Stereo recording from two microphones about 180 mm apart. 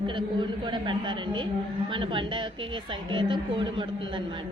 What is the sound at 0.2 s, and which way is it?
A man's voice, 25° right (ahead or behind).